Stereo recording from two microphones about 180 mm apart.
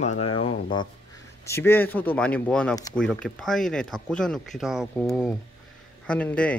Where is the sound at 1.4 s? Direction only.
15° left (ahead or behind).